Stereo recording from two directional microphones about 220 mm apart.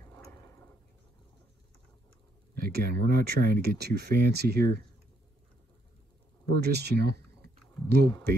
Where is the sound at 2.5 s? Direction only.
45° right (ahead or behind).